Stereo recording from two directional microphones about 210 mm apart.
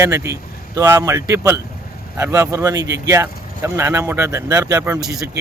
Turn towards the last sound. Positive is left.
turn(degrees=-15)  # may be behind; listen again after turning